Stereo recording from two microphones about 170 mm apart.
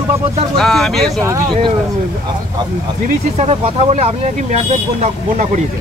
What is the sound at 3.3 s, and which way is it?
Speech, 40° right (ahead or behind).